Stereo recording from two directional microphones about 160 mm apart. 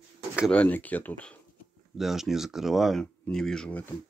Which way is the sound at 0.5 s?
10° left (ahead or behind).